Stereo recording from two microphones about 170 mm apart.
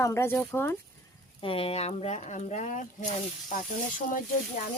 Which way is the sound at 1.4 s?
35° left (ahead or behind).